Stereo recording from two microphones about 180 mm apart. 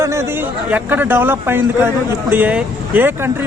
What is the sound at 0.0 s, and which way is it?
Chatter, 15° right (ahead or behind).